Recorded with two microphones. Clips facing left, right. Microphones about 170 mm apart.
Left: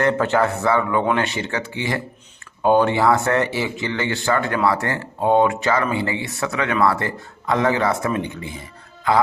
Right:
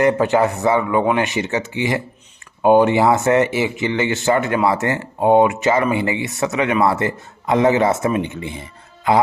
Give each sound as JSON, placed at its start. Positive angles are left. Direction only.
{"t": 0.0, "sound": "speech", "side_deg": -15}